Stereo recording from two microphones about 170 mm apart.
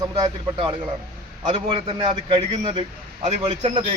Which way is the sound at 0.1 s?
30° right (ahead or behind).